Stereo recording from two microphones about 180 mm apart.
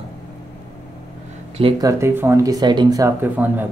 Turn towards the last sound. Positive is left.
turn(degrees=-10)  # may be behind; listen again after turning